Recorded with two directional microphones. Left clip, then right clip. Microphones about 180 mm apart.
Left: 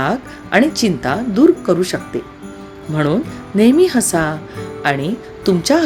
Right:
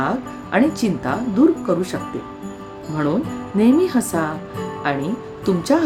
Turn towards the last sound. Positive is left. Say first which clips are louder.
# left 4 dB
turn(degrees=15)  # may be behind; listen again after turning